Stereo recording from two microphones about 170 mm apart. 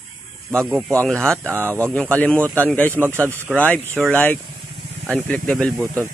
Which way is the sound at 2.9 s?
10° right (ahead or behind).